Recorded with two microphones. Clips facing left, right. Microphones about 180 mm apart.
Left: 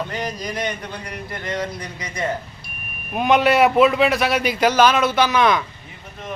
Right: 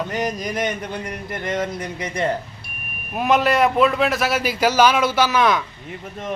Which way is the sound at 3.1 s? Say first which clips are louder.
Left 2 dB; centre (ahead or behind).